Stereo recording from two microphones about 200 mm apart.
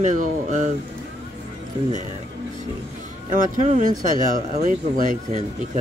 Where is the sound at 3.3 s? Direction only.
40° right (ahead or behind).